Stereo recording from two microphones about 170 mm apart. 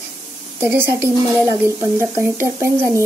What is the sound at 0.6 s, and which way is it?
Speech, 15° right (ahead or behind).